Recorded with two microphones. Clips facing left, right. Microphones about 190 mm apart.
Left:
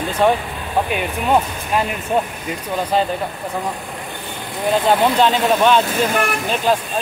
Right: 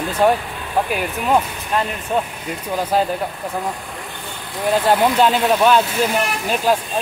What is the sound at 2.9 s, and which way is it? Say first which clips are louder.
Speech: even; 5° right (ahead or behind).